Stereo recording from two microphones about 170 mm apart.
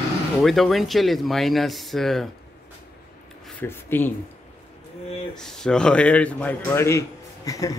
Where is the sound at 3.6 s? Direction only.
10° left (ahead or behind).